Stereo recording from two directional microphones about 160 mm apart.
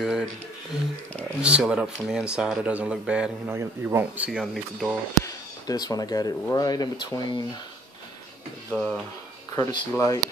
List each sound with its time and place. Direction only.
0.0 s speech: centre (ahead or behind)
1.4 s speech: 5° right (ahead or behind)
5.2 s speech: 25° left (ahead or behind)
8.7 s speech: 10° left (ahead or behind)
9.6 s speech: 25° left (ahead or behind)